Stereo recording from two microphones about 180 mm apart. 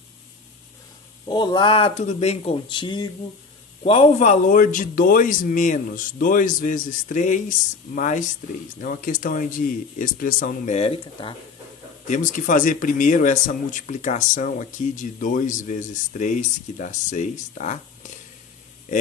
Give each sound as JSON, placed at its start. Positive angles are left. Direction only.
{"t": 1.2, "sound": "speech", "side_deg": 25}
{"t": 12.1, "sound": "speech", "side_deg": 45}